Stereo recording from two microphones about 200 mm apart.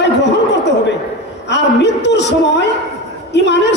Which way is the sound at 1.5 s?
60° left (ahead or behind).